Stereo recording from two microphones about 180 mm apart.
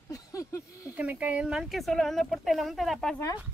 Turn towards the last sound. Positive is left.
turn(degrees=0)  # may be behind; listen again after turning